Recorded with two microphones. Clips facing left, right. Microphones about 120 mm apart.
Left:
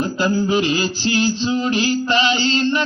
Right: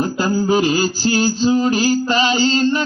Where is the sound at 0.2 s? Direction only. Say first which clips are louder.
Right 1 dB; 40° right (ahead or behind).